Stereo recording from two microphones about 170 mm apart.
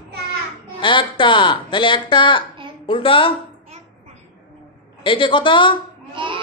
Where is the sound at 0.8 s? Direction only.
30° left (ahead or behind).